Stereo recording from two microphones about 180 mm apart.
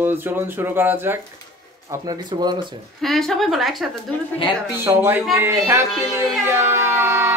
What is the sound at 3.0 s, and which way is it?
Speech, centre (ahead or behind).